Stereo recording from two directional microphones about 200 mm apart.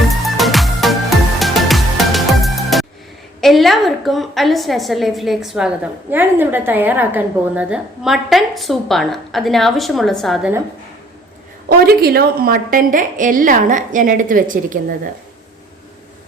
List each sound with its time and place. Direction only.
0.3 s music: centre (ahead or behind)
3.4 s a woman's voice: centre (ahead or behind)
11.7 s a woman's voice: 50° right (ahead or behind)